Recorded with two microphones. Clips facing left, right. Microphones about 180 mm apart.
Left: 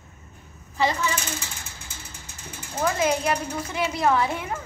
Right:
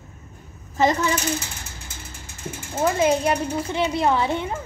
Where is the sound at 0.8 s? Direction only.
45° right (ahead or behind).